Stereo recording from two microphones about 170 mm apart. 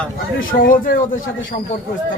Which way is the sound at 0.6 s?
55° left (ahead or behind).